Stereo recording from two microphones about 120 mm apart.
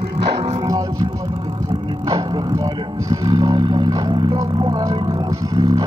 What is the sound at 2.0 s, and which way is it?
Vehicle, 30° right (ahead or behind).